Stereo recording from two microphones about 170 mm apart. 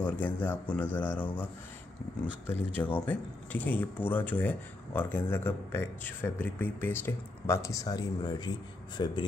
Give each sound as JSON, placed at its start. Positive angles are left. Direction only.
{"t": 0.0, "sound": "speech", "side_deg": 10}